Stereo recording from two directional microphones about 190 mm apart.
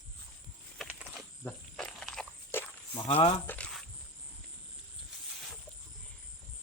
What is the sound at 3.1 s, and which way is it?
Speech, 35° left (ahead or behind).